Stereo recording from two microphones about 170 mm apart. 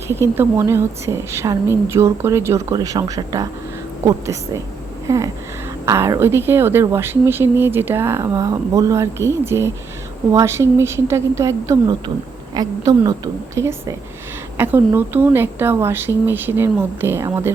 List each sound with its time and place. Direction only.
0.1 s a woman's voice: 15° right (ahead or behind)
5.0 s a sound: 20° right (ahead or behind)
5.8 s a woman's voice: 20° right (ahead or behind)